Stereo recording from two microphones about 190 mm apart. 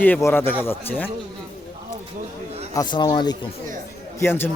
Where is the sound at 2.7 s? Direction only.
20° left (ahead or behind).